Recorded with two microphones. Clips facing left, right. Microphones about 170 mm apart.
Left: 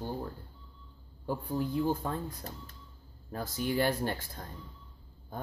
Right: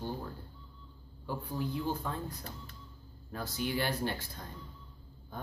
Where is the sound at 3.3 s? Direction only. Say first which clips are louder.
Left 3 dB; 45° left (ahead or behind).